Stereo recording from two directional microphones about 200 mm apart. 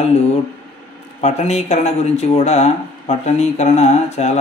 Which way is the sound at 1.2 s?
35° left (ahead or behind).